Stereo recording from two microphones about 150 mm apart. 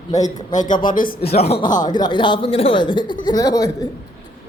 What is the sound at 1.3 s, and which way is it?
Speech, 45° left (ahead or behind).